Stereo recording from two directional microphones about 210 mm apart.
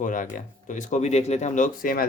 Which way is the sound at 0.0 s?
40° left (ahead or behind).